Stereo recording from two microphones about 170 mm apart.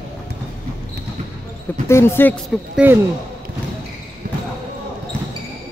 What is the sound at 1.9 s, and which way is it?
Speech, 15° left (ahead or behind).